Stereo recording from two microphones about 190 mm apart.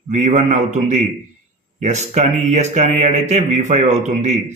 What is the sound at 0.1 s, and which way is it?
Speech, 35° right (ahead or behind).